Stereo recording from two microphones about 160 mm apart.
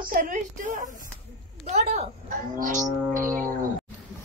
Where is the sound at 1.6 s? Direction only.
45° right (ahead or behind).